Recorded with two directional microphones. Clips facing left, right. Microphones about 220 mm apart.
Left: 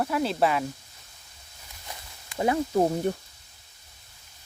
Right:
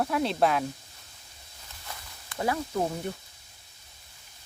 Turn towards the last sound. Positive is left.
turn(degrees=35)  # may be behind; listen again after turning